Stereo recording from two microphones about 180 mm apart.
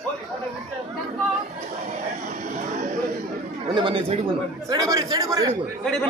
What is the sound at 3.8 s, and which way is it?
Speech, 30° right (ahead or behind).